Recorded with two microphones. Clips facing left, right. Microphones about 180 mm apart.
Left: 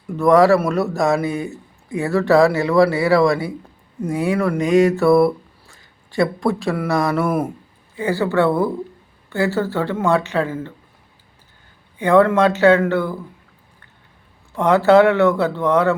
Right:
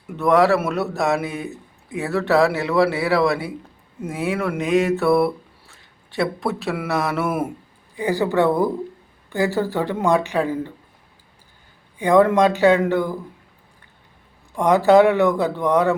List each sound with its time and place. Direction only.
0.2 s a man's voice: centre (ahead or behind)
4.0 s a sound: centre (ahead or behind)
7.9 s speech: 15° right (ahead or behind)
11.9 s speech: 15° right (ahead or behind)
14.5 s speech: 15° right (ahead or behind)